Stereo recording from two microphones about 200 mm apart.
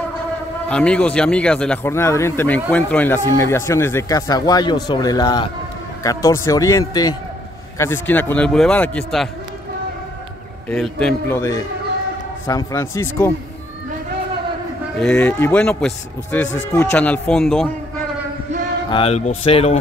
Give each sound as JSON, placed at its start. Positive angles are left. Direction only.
{"t": 0.7, "sound": "speech", "side_deg": 5}
{"t": 10.7, "sound": "speech", "side_deg": 5}
{"t": 15.0, "sound": "speech", "side_deg": 5}
{"t": 18.9, "sound": "speech", "side_deg": 30}